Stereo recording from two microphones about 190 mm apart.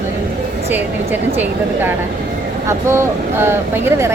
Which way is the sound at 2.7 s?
15° right (ahead or behind).